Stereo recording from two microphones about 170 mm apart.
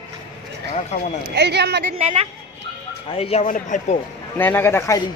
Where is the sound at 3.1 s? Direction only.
35° left (ahead or behind).